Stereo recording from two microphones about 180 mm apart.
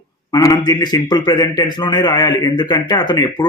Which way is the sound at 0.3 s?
20° left (ahead or behind).